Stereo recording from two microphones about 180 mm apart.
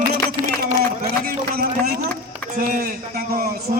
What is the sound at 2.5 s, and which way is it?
Speech, 45° right (ahead or behind).